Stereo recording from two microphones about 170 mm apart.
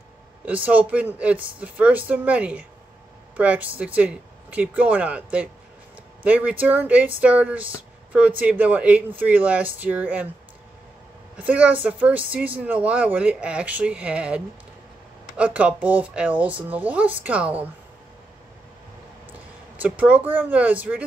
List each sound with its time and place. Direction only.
0.5 s speech: 10° right (ahead or behind)
11.3 s speech: 10° right (ahead or behind)
19.8 s speech: 10° right (ahead or behind)